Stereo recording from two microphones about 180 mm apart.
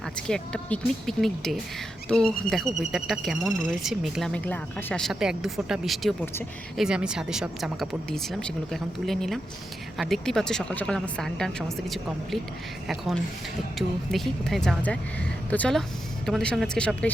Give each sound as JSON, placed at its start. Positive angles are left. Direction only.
{"t": 0.2, "sound": "speech", "side_deg": 5}
{"t": 13.7, "sound": "a woman's voice", "side_deg": 0}